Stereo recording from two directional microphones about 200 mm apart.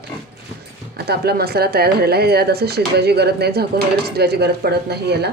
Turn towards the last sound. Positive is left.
turn(degrees=-55)  # may be behind; listen again after turning